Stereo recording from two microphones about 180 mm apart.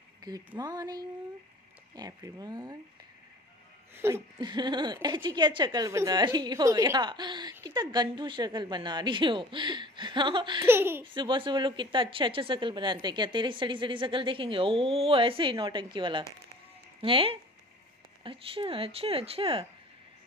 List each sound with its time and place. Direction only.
0.6 s speech: 20° right (ahead or behind)
3.9 s speech: 15° right (ahead or behind)
10.6 s speech: 15° right (ahead or behind)
11.1 s speech: 25° right (ahead or behind)